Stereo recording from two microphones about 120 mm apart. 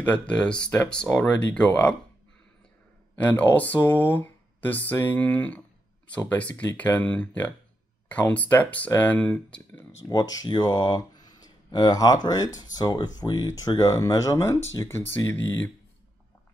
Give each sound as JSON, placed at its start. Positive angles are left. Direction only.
{"t": 0.0, "sound": "speech", "side_deg": 10}
{"t": 3.2, "sound": "speech", "side_deg": 15}
{"t": 10.0, "sound": "speech", "side_deg": 30}